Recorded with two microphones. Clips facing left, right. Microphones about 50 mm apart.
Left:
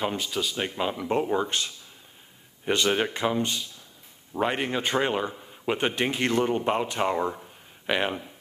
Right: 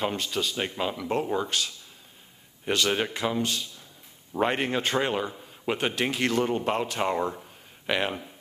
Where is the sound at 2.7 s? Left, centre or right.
Centre.